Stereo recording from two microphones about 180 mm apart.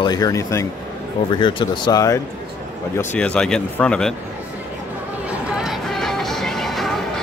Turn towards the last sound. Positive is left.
turn(degrees=0)  # may be behind; listen again after turning